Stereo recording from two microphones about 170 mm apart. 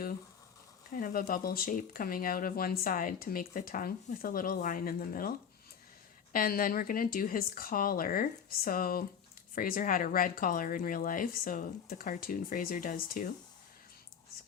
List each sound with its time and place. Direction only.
0.9 s speech: 55° left (ahead or behind)
6.3 s speech: 55° left (ahead or behind)